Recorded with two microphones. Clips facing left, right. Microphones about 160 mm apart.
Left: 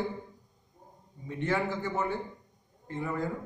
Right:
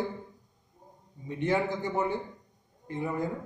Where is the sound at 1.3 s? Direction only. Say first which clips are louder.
Right 2 dB; 15° right (ahead or behind).